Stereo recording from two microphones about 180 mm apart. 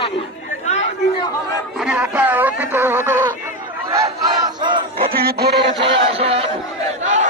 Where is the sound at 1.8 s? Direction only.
5° right (ahead or behind).